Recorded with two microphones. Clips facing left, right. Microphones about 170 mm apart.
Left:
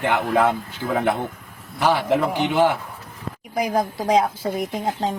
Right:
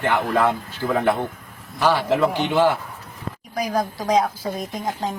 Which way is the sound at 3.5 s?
25° left (ahead or behind).